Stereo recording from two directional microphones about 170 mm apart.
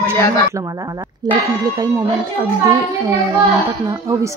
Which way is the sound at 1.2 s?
25° right (ahead or behind).